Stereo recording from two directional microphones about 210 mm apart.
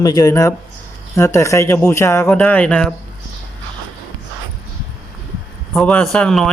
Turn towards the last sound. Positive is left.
turn(degrees=5)  # may be behind; listen again after turning